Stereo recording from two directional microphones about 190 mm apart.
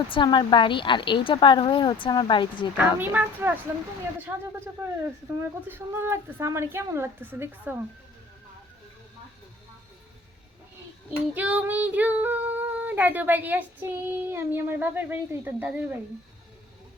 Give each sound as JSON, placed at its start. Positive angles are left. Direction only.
{"t": 0.1, "sound": "a woman's voice", "side_deg": 25}
{"t": 2.7, "sound": "female singing", "side_deg": -10}
{"t": 11.3, "sound": "female singing", "side_deg": -5}